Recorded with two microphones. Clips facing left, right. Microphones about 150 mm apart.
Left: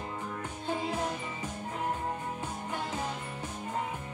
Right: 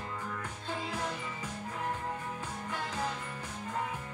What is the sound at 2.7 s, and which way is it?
Music, 20° left (ahead or behind).